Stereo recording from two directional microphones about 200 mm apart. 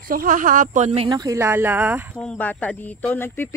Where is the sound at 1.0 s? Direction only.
15° right (ahead or behind).